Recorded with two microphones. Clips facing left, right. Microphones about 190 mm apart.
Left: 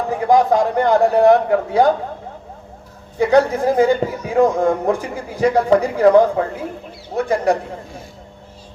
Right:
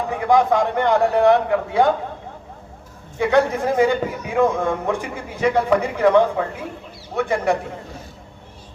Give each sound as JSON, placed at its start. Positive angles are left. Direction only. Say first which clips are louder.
{"t": 0.1, "sound": "a man's voice", "louder": "left 3 dB", "side_deg": 35}
{"t": 3.2, "sound": "a man's voice", "louder": "left 3 dB", "side_deg": 35}